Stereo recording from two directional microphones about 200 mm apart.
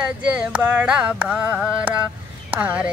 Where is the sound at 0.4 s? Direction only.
5° right (ahead or behind).